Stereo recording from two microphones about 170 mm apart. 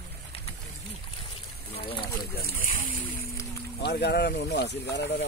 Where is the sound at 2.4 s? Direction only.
55° left (ahead or behind).